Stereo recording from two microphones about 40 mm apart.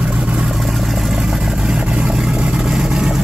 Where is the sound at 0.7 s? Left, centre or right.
Centre.